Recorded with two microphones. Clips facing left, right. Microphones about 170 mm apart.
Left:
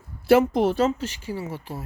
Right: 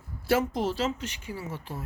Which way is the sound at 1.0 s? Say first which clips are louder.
Left 6 dB; 35° left (ahead or behind).